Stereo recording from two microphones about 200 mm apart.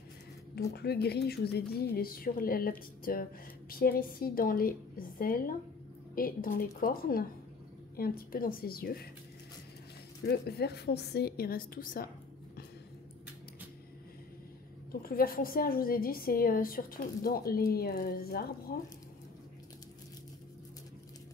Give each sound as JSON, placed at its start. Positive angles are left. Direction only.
{"t": 0.6, "sound": "a woman's voice", "side_deg": 55}
{"t": 10.2, "sound": "a woman's voice", "side_deg": 55}
{"t": 14.9, "sound": "a woman's voice", "side_deg": 45}